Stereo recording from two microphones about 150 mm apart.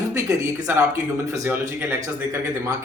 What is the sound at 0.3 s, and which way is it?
Speech, 20° right (ahead or behind).